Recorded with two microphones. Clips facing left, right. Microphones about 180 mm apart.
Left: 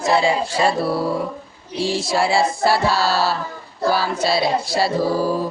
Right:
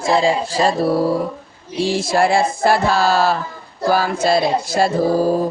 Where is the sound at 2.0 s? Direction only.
50° right (ahead or behind).